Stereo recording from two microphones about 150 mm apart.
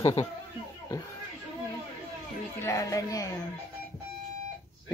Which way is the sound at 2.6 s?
20° left (ahead or behind).